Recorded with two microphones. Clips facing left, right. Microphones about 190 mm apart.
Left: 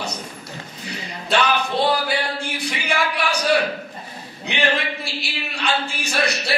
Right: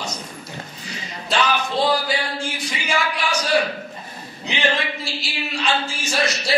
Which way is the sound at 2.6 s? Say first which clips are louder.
Left 2 dB; 60° left (ahead or behind).